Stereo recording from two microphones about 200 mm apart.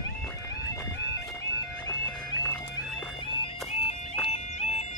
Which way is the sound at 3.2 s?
25° left (ahead or behind).